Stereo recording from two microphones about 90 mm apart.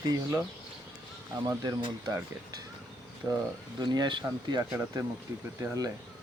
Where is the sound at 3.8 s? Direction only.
55° right (ahead or behind).